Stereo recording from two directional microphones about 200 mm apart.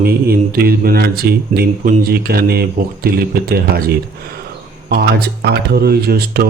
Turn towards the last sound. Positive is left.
turn(degrees=-50)  # may be behind; listen again after turning